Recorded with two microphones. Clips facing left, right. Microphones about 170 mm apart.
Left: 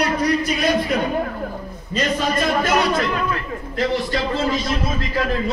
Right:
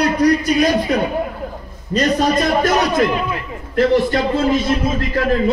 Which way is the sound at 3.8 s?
55° right (ahead or behind).